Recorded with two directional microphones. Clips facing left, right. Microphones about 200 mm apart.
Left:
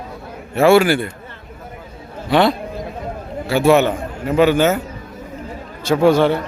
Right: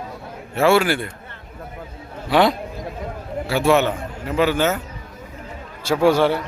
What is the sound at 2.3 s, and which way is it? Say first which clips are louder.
Speech: left 2 dB; 15° right (ahead or behind).